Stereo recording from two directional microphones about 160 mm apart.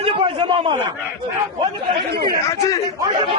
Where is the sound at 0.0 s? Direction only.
35° right (ahead or behind).